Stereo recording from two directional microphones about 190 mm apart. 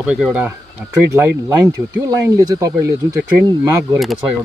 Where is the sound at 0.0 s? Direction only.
5° right (ahead or behind).